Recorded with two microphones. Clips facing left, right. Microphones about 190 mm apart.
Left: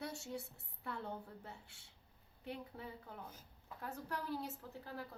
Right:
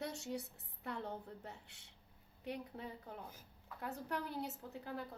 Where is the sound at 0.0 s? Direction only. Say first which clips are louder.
Right 2 dB; 20° right (ahead or behind).